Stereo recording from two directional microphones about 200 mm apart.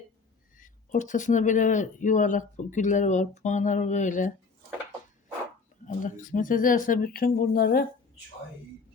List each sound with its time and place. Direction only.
0.5 s speech: 40° left (ahead or behind)
5.8 s speech: 40° left (ahead or behind)